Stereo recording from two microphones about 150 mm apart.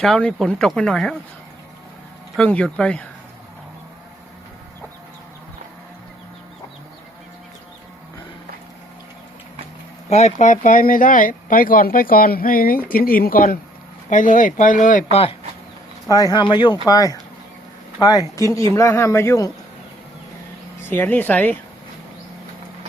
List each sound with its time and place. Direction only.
0.0 s speech: 5° left (ahead or behind)
2.3 s speech: 5° left (ahead or behind)
10.1 s speech: 50° left (ahead or behind); by 13.6 s 75° left (ahead or behind)
14.1 s speech: 60° left (ahead or behind)
16.0 s speech: 25° left (ahead or behind)
20.9 s speech: 10° left (ahead or behind)